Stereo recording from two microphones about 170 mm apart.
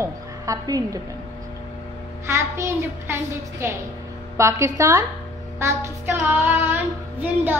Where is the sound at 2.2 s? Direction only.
15° right (ahead or behind).